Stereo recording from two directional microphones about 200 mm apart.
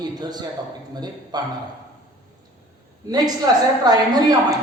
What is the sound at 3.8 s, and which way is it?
Speech, 20° right (ahead or behind).